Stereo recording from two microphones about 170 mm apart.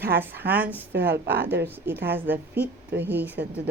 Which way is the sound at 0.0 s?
70° right (ahead or behind).